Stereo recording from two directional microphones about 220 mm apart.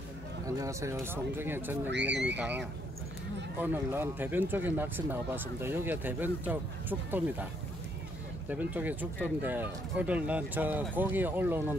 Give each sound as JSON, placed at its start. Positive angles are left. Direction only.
{"t": 0.5, "sound": "speech", "side_deg": -15}
{"t": 1.9, "sound": "speech", "side_deg": -50}
{"t": 2.3, "sound": "speech", "side_deg": -5}
{"t": 8.5, "sound": "speech", "side_deg": -5}